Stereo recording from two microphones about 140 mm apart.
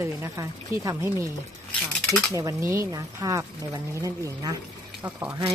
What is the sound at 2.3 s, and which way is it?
A woman's voice, 20° right (ahead or behind).